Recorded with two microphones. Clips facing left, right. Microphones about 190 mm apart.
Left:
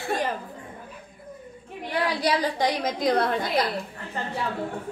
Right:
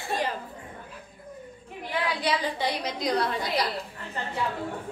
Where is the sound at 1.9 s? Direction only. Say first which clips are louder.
Left 3 dB; 40° left (ahead or behind).